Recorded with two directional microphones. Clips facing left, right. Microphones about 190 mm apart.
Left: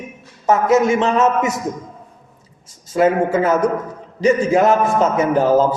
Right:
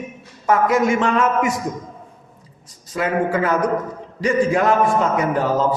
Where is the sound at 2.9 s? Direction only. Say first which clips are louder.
Left 5 dB; 25° left (ahead or behind).